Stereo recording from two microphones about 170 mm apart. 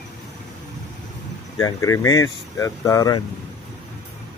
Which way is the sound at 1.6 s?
20° left (ahead or behind).